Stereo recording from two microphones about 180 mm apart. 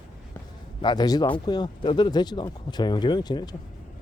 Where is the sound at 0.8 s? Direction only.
25° left (ahead or behind).